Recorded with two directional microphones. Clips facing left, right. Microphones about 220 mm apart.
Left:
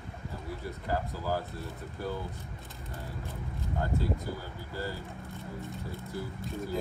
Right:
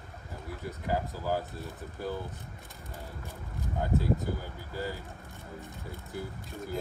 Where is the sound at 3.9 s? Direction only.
Centre (ahead or behind).